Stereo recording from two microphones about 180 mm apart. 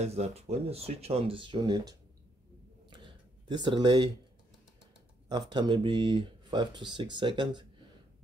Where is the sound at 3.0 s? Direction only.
25° right (ahead or behind).